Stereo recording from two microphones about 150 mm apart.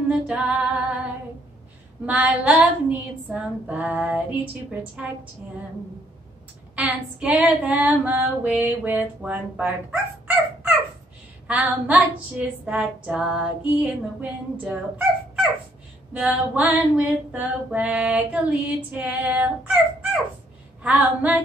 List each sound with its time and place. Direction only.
0.1 s female singing: 5° right (ahead or behind)
2.0 s female singing: 10° right (ahead or behind)
6.7 s female singing: 10° right (ahead or behind)
16.1 s female singing: 10° right (ahead or behind)